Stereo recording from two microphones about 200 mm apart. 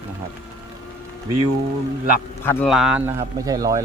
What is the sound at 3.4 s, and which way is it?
Speech, 20° right (ahead or behind).